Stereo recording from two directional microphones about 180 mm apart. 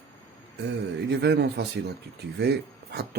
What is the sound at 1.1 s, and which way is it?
Speech, 70° right (ahead or behind).